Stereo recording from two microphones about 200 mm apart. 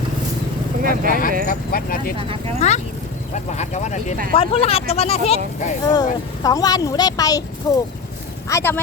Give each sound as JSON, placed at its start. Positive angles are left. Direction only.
{"t": 0.8, "sound": "speech", "side_deg": -45}
{"t": 1.5, "sound": "speech", "side_deg": 45}
{"t": 2.1, "sound": "speech", "side_deg": -30}
{"t": 2.6, "sound": "speech", "side_deg": 35}
{"t": 5.8, "sound": "speech", "side_deg": 20}